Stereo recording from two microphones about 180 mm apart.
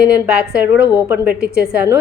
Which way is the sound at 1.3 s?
60° right (ahead or behind).